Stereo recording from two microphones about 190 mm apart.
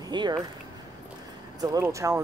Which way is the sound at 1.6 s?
20° right (ahead or behind).